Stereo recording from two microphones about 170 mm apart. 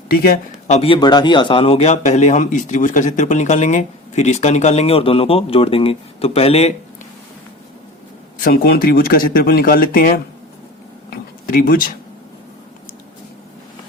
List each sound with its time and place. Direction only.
0.1 s speech: 65° left (ahead or behind)
0.7 s speech: 35° left (ahead or behind)
0.9 s speech: 25° left (ahead or behind)
8.4 s speech: 60° left (ahead or behind)
11.1 s a sound: 55° left (ahead or behind)